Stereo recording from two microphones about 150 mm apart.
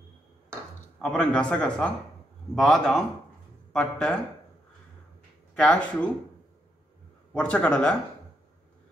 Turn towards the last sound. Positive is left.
turn(degrees=5)  # may be behind; listen again after turning